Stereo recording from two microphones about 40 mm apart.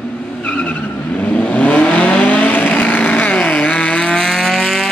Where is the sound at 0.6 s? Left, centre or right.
Left.